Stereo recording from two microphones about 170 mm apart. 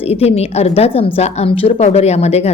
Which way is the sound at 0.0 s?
35° left (ahead or behind).